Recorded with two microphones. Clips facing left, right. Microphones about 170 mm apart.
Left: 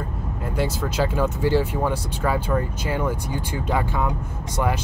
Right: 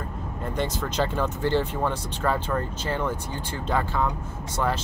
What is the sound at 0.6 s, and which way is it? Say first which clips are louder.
Speech: left 3 dB; 5° left (ahead or behind).